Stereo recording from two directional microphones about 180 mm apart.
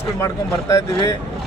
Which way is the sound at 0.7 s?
20° left (ahead or behind).